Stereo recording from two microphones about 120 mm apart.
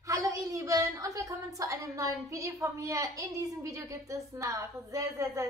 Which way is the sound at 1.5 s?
30° right (ahead or behind).